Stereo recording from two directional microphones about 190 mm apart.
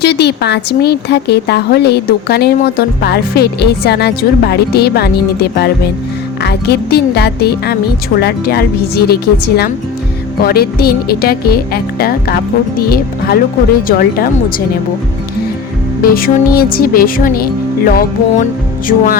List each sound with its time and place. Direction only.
0.0 s speech: 60° left (ahead or behind)
16.0 s speech: 50° left (ahead or behind)